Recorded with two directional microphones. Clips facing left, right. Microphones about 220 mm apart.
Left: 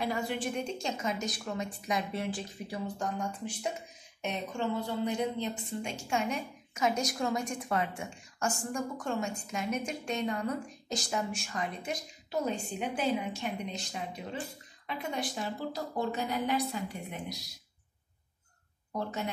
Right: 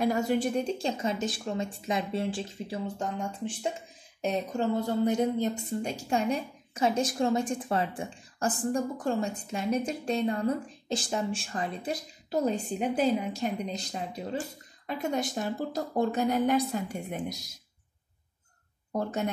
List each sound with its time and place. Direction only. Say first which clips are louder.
0.0 s a woman's voice: right 7 dB; 45° right (ahead or behind)
18.9 s speech: right 5 dB; 45° right (ahead or behind)